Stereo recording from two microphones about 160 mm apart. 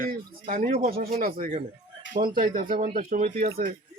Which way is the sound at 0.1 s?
65° right (ahead or behind).